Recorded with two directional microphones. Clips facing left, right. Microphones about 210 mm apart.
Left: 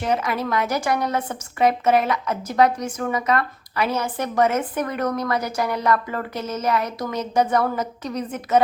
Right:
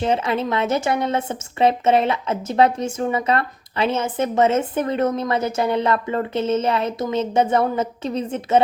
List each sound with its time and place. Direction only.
0.0 s a woman's voice: 25° right (ahead or behind)